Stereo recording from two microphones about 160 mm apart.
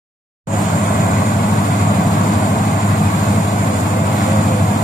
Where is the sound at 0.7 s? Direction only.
55° left (ahead or behind).